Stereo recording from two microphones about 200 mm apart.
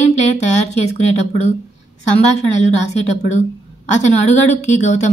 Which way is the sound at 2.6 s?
35° left (ahead or behind).